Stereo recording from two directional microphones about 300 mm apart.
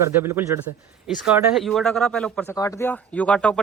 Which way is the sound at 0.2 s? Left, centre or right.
Centre.